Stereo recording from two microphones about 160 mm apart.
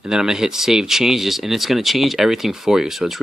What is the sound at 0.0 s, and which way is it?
Speech, 5° right (ahead or behind).